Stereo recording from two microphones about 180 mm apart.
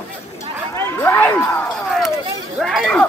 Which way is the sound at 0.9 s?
10° left (ahead or behind).